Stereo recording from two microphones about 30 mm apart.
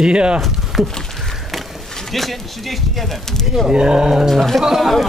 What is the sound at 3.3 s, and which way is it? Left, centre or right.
Speech, centre.